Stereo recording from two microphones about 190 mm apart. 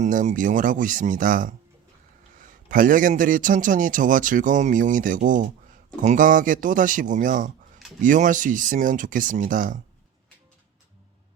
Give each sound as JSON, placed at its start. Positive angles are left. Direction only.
{"t": 0.0, "sound": "a man's voice", "side_deg": -40}